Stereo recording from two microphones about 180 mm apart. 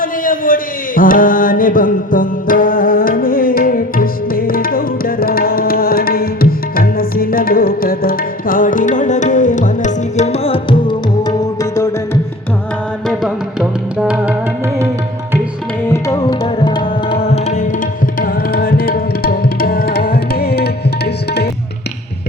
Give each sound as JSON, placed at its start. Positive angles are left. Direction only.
{"t": 0.0, "sound": "music", "side_deg": 50}
{"t": 13.1, "sound": "music", "side_deg": 0}
{"t": 15.9, "sound": "tabla", "side_deg": 20}